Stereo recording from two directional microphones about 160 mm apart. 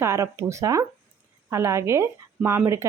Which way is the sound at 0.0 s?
20° right (ahead or behind).